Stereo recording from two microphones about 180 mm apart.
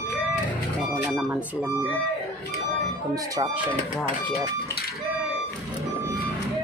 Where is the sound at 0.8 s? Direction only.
5° right (ahead or behind).